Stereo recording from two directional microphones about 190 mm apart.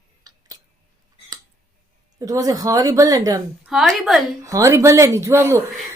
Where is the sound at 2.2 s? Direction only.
20° right (ahead or behind).